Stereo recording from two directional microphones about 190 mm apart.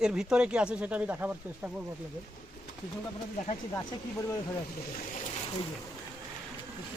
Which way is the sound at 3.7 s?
15° left (ahead or behind).